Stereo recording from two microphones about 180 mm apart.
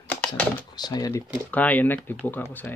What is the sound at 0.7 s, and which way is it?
Speech, 20° left (ahead or behind).